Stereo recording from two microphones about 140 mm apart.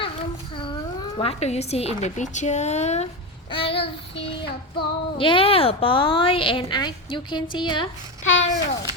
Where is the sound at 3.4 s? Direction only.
40° left (ahead or behind).